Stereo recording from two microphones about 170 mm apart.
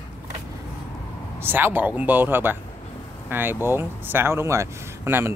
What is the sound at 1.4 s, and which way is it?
Speech, 15° right (ahead or behind).